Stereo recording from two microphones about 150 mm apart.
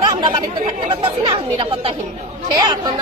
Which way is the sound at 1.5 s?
35° right (ahead or behind).